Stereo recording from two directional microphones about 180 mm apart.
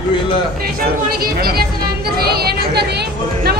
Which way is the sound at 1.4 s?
60° right (ahead or behind).